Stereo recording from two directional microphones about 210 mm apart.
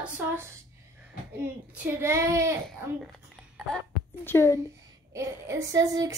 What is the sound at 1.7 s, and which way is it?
Speech, 10° right (ahead or behind).